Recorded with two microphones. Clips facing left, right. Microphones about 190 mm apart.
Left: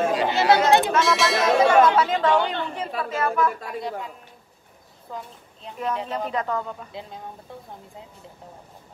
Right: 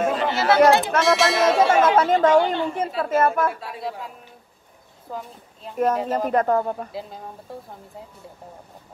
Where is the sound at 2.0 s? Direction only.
45° right (ahead or behind).